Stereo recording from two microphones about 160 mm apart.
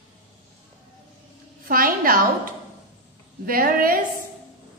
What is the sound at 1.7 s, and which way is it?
A woman's voice, 60° right (ahead or behind).